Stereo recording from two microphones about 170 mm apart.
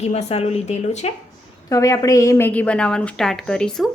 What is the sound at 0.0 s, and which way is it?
A woman's voice, 40° left (ahead or behind).